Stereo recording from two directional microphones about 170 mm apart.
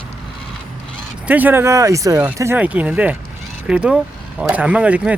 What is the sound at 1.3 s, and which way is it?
Speech, 10° right (ahead or behind).